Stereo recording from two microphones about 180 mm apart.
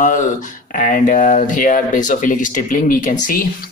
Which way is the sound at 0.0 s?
45° left (ahead or behind).